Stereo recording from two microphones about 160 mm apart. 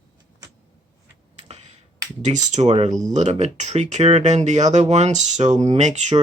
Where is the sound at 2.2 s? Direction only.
50° right (ahead or behind).